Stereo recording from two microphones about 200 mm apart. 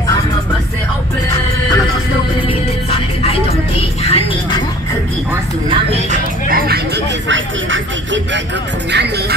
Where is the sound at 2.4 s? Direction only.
30° left (ahead or behind).